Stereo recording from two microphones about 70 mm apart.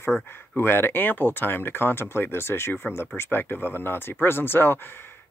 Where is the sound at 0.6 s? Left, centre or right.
Left.